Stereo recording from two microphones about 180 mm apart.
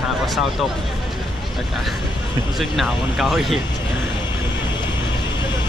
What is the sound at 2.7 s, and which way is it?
Speech, centre (ahead or behind).